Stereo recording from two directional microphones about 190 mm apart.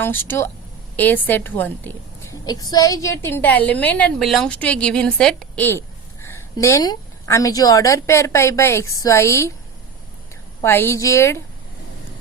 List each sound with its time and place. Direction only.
0.0 s a woman's voice: 10° left (ahead or behind)
2.4 s a woman's voice: 20° left (ahead or behind)
10.6 s a woman's voice: 10° left (ahead or behind)